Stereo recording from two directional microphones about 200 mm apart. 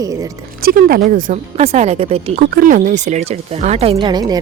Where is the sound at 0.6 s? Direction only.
45° right (ahead or behind); by 2.4 s 30° right (ahead or behind).